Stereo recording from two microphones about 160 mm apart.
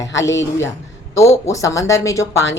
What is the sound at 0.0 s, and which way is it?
A woman's voice, 20° left (ahead or behind).